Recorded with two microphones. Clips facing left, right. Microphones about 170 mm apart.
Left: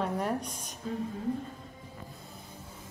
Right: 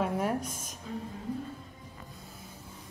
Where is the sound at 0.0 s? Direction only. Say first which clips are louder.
Right 1 dB; 5° right (ahead or behind).